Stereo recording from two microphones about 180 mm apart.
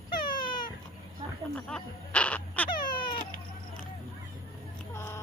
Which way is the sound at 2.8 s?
55° left (ahead or behind).